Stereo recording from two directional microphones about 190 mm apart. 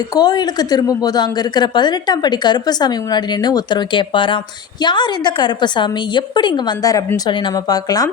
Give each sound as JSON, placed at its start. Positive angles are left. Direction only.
{"t": 0.1, "sound": "a woman's voice", "side_deg": 20}